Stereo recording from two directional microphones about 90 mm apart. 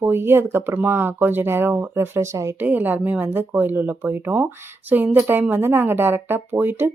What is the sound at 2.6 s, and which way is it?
A woman's voice, 20° right (ahead or behind).